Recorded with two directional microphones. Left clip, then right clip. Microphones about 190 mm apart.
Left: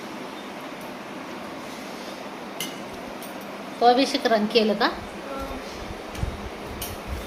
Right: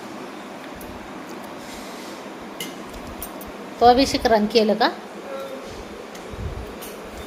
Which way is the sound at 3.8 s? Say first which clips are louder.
Right 4 dB; 25° right (ahead or behind).